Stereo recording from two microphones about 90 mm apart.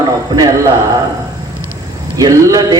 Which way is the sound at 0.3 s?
40° right (ahead or behind).